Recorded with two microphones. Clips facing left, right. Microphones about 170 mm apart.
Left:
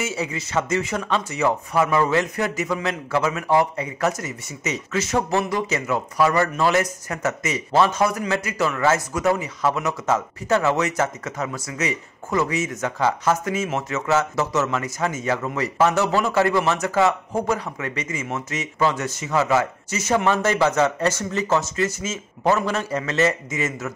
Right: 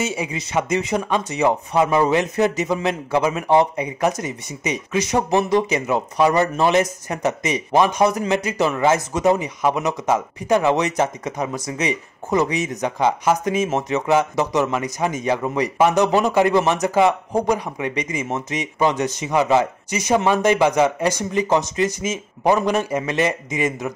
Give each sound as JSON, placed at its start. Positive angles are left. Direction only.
{"t": 0.0, "sound": "speech", "side_deg": -15}